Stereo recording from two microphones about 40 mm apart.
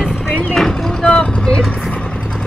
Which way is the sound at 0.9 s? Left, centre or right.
Centre.